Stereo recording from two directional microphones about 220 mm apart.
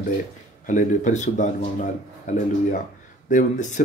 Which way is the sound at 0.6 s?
35° left (ahead or behind).